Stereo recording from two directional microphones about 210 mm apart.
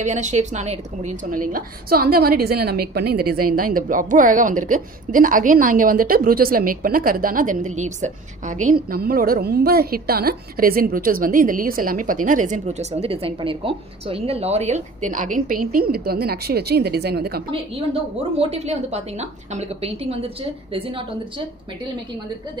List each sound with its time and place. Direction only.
0.0 s a woman's voice: 35° right (ahead or behind)
18.4 s a woman's voice: 30° right (ahead or behind)